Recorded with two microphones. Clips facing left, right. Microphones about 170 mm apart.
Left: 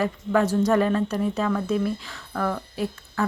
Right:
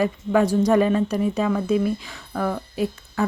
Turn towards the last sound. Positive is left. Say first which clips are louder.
# right 3 dB
turn(degrees=-15)  # may be behind; listen again after turning